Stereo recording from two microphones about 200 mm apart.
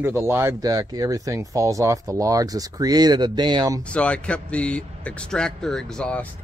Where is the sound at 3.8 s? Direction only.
5° left (ahead or behind).